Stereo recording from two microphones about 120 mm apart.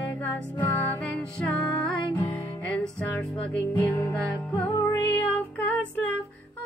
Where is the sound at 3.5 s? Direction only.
15° left (ahead or behind).